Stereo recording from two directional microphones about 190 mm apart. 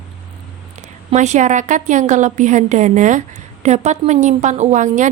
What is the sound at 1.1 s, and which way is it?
A woman's voice, 40° right (ahead or behind).